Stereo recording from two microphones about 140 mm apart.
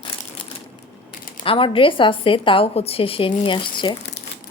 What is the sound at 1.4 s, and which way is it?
A woman's voice, 40° left (ahead or behind).